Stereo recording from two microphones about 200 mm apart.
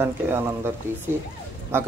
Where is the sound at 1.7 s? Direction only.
10° right (ahead or behind).